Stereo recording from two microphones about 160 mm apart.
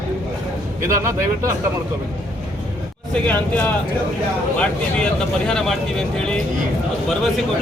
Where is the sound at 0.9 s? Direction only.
15° right (ahead or behind).